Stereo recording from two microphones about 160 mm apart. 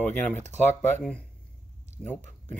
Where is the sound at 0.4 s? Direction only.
45° right (ahead or behind).